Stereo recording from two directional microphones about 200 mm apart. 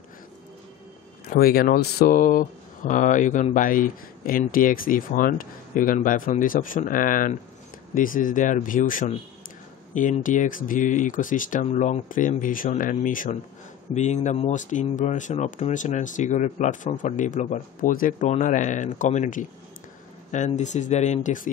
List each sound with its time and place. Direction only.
1.2 s speech: 50° left (ahead or behind)